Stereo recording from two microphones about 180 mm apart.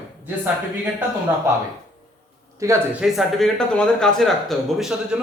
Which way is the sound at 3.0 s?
Centre (ahead or behind).